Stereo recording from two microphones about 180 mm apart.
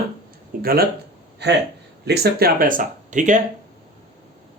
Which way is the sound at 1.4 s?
70° right (ahead or behind).